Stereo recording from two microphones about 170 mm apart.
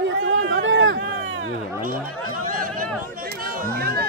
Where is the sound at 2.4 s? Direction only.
55° right (ahead or behind).